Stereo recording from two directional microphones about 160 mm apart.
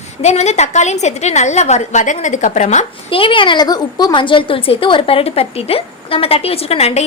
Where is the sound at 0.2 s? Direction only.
45° left (ahead or behind).